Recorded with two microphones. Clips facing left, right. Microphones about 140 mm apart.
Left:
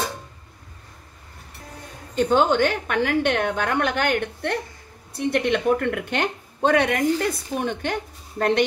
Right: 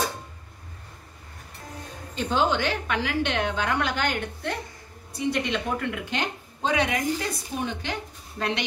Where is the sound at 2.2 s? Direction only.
50° left (ahead or behind).